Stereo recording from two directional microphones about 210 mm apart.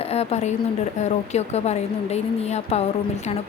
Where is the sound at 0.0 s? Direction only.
30° left (ahead or behind).